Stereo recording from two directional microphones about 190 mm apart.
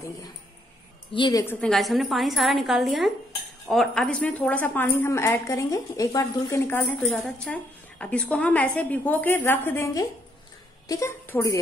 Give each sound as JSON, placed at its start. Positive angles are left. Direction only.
{"t": 1.1, "sound": "a woman's voice", "side_deg": 25}
{"t": 1.4, "sound": "a woman's voice", "side_deg": 10}